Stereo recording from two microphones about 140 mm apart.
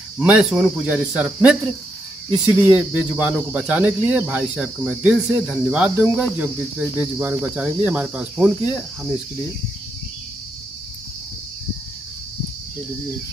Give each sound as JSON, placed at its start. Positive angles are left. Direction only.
{"t": 0.2, "sound": "cricket", "side_deg": -5}